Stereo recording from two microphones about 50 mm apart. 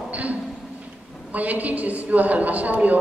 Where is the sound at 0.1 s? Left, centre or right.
Right.